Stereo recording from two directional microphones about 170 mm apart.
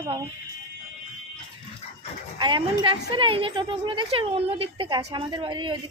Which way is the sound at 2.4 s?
30° right (ahead or behind).